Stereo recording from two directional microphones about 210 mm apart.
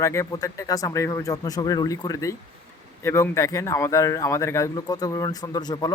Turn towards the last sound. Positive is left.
turn(degrees=20)  # may be behind; listen again after turning